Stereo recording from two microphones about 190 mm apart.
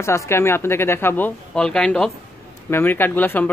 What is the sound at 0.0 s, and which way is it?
Speech, 15° left (ahead or behind).